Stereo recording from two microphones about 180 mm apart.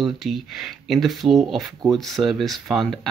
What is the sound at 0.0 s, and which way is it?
Speech, centre (ahead or behind).